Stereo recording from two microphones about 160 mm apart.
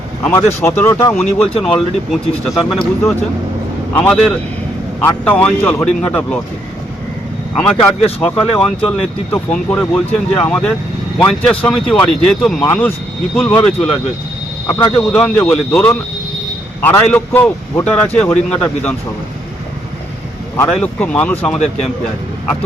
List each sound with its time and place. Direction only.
0.2 s a man's voice: 15° left (ahead or behind)
1.2 s a man's voice: 5° left (ahead or behind)
7.5 s a man's voice: 5° left (ahead or behind)
14.7 s speech: 20° left (ahead or behind)
15.1 s a man's voice: 5° left (ahead or behind)
20.8 s a man's voice: 10° left (ahead or behind)